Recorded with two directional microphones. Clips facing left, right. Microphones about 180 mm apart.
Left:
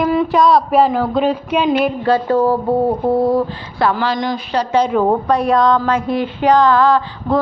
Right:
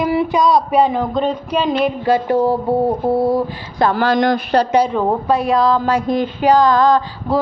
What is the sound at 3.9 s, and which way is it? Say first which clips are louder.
Speech: right 4 dB; 50° right (ahead or behind).